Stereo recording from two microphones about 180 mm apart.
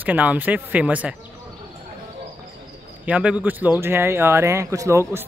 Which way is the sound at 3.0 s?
5° right (ahead or behind).